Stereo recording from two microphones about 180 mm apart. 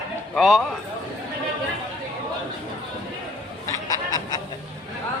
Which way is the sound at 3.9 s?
20° left (ahead or behind).